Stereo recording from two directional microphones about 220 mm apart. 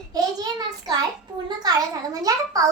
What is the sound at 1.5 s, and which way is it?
A child's voice, 20° right (ahead or behind).